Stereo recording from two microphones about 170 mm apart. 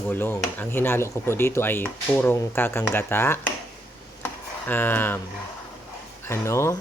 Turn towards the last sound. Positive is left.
turn(degrees=15)  # may be behind; listen again after turning